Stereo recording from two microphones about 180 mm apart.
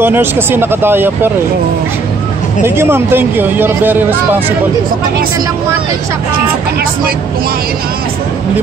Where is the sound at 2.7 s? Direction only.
10° right (ahead or behind).